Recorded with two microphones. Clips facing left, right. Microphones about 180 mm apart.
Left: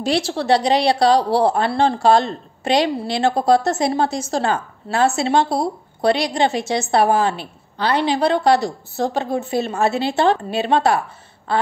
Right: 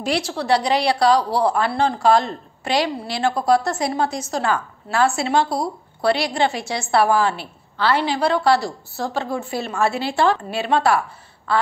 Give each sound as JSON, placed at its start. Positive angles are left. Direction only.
{"t": 0.0, "sound": "a woman's voice", "side_deg": 25}